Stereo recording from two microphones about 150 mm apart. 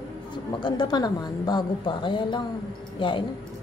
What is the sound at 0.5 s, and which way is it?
A woman's voice, 30° left (ahead or behind).